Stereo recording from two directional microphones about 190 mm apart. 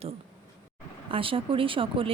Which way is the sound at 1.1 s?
30° right (ahead or behind).